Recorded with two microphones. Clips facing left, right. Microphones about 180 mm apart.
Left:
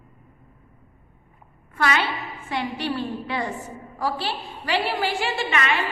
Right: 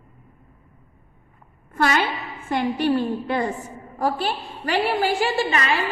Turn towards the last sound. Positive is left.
turn(degrees=-35)  # may be behind; listen again after turning